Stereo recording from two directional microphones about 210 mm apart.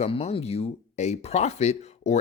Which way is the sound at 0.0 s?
30° left (ahead or behind).